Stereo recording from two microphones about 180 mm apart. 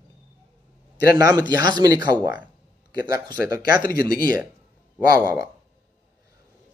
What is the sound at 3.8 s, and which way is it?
Speech, 55° left (ahead or behind).